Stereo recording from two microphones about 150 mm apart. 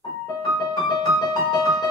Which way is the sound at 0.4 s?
30° left (ahead or behind).